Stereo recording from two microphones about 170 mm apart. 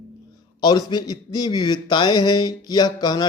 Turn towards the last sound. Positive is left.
turn(degrees=25)  # may be behind; listen again after turning